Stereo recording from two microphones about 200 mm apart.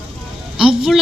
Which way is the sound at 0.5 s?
Centre (ahead or behind).